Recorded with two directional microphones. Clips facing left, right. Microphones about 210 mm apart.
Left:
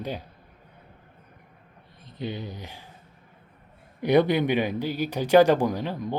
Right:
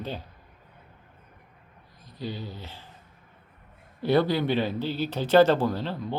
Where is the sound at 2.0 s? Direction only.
20° left (ahead or behind).